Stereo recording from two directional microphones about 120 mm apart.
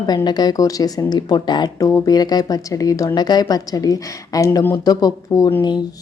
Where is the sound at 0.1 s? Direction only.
35° left (ahead or behind).